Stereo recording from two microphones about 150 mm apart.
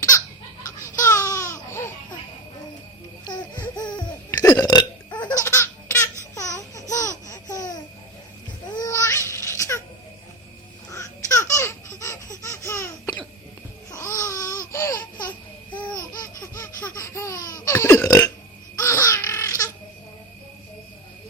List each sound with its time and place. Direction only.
1.0 s a sound: 20° left (ahead or behind)
3.8 s music: 25° left (ahead or behind)
4.5 s burping: 25° left (ahead or behind)
5.5 s baby laughter: 15° left (ahead or behind)
6.3 s laughter: 20° left (ahead or behind)
8.7 s babbling: 20° left (ahead or behind)
10.9 s laughter: 20° left (ahead or behind)
13.9 s babbling: 20° left (ahead or behind)
14.7 s laughter: 20° left (ahead or behind)
15.3 s babbling: 10° left (ahead or behind)
15.9 s laughter: 25° left (ahead or behind)